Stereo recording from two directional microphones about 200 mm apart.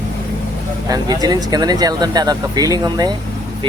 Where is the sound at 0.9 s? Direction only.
20° right (ahead or behind).